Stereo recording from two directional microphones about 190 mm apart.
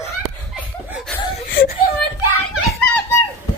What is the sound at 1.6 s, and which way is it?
Whimper, 50° left (ahead or behind).